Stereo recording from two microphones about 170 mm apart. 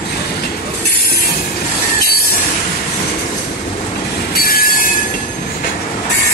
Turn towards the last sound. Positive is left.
turn(degrees=60)  # may be behind; listen again after turning